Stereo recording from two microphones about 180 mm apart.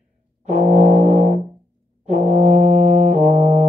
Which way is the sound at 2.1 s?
40° right (ahead or behind).